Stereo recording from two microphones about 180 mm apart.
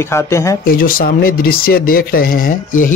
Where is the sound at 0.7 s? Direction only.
50° left (ahead or behind).